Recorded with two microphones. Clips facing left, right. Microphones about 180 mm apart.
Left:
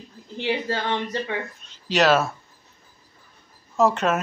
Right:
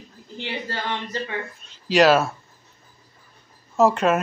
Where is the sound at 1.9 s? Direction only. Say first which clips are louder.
Right 3 dB; 10° right (ahead or behind).